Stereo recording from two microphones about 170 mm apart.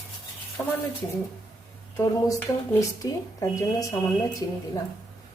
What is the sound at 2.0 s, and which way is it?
Speech, 20° left (ahead or behind).